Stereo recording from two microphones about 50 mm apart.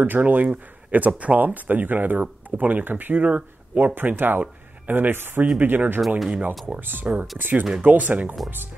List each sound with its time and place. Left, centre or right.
0.0 s speech: right
5.9 s speech: centre
6.7 s speech: right